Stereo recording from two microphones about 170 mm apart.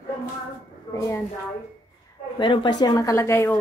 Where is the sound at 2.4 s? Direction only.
30° left (ahead or behind).